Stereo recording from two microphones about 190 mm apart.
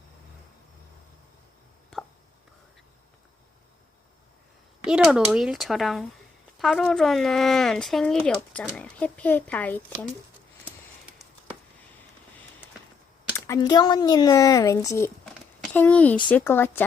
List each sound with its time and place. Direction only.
4.8 s speech: 5° right (ahead or behind)
13.3 s speech: 20° left (ahead or behind)